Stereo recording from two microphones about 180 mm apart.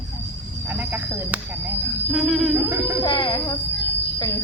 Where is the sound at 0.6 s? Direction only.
10° right (ahead or behind).